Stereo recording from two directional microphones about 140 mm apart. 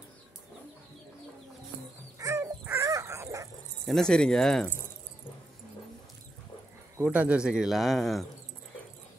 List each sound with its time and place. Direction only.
2.1 s dog: 20° right (ahead or behind)
3.8 s speech: 5° left (ahead or behind)
7.0 s speech: 10° right (ahead or behind)